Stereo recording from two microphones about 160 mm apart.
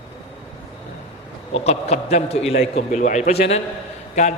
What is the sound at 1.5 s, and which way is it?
A man's voice, 40° left (ahead or behind).